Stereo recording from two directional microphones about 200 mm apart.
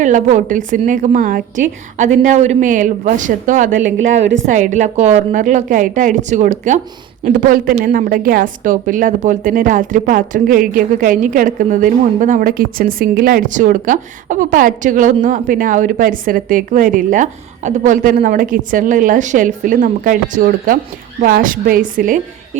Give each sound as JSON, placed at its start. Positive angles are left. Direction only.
{"t": 0.0, "sound": "a woman's voice", "side_deg": -40}
{"t": 3.9, "sound": "a woman's voice", "side_deg": -75}
{"t": 4.5, "sound": "a woman's voice", "side_deg": -40}